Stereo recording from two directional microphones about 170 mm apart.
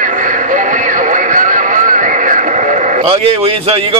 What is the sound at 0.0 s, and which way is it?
Radio, 50° right (ahead or behind).